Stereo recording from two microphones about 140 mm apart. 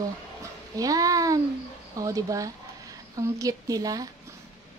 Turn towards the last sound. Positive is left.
turn(degrees=-25)  # may be behind; listen again after turning